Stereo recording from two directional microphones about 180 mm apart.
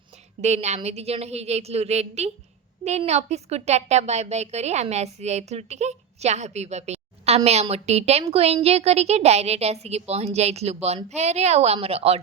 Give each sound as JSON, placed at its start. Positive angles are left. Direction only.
{"t": 0.4, "sound": "a woman's voice", "side_deg": -40}